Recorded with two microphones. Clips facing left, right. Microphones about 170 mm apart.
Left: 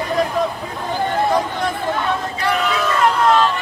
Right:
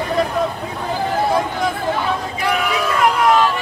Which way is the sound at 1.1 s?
5° right (ahead or behind).